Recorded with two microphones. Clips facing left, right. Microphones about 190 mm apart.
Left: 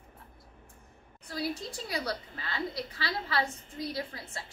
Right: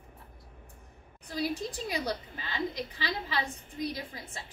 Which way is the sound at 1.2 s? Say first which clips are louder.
Right 2 dB; 20° right (ahead or behind).